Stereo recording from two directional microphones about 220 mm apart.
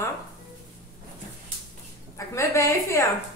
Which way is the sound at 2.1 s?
15° left (ahead or behind).